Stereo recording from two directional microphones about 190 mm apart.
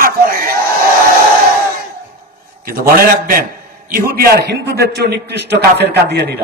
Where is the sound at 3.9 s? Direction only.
50° right (ahead or behind).